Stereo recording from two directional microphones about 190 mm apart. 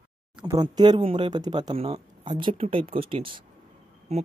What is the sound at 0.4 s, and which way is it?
Speech, 20° right (ahead or behind).